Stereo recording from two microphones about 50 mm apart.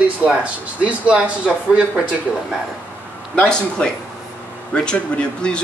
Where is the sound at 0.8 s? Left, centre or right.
Right.